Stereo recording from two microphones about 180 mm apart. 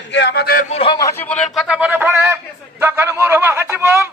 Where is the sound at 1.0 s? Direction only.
10° left (ahead or behind).